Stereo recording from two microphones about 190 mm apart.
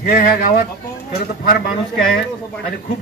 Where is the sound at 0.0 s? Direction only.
55° left (ahead or behind).